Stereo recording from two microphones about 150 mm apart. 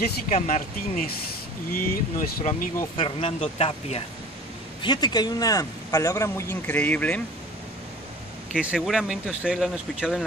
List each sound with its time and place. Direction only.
0.0 s speech: 75° left (ahead or behind)
3.0 s speech: 40° left (ahead or behind)
4.8 s speech: 30° left (ahead or behind); by 7.2 s 10° left (ahead or behind)
8.5 s speech: 5° right (ahead or behind)